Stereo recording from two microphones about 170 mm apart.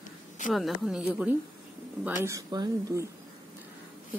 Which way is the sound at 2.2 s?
20° right (ahead or behind).